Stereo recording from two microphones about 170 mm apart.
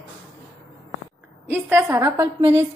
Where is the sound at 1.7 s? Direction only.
20° right (ahead or behind).